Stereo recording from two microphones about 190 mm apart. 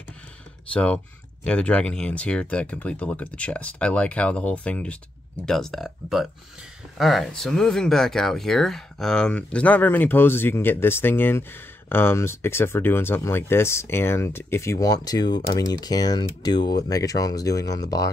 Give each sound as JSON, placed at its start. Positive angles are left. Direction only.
{"t": 0.7, "sound": "speech", "side_deg": 5}